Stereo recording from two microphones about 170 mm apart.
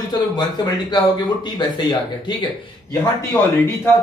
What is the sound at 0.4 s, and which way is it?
Speech, 25° left (ahead or behind).